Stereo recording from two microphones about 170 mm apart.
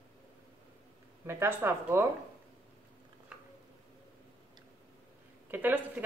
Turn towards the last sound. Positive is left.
turn(degrees=-10)  # may be behind; listen again after turning